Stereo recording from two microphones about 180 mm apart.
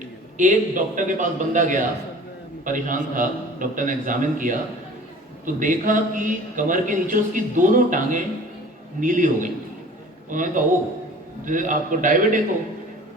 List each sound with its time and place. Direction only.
0.3 s a man's voice: 45° right (ahead or behind)